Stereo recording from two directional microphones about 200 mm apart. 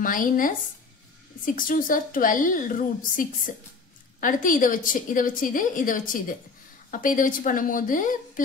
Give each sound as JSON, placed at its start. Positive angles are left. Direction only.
{"t": 0.0, "sound": "a woman's voice", "side_deg": 45}